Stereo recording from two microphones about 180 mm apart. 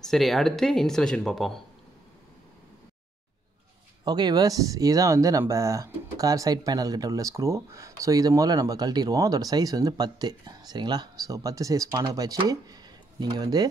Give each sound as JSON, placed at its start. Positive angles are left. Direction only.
{"t": 0.0, "sound": "speech", "side_deg": 0}
{"t": 4.0, "sound": "speech", "side_deg": -25}